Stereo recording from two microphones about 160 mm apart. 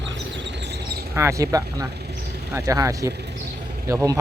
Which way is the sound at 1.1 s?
20° right (ahead or behind).